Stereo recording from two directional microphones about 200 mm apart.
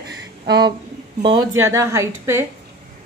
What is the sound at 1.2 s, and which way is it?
A man's voice, 20° right (ahead or behind).